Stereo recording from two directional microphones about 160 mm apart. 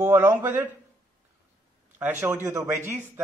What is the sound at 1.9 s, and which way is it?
Speech, 15° right (ahead or behind).